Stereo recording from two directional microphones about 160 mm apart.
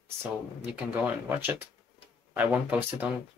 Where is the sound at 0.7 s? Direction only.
10° right (ahead or behind).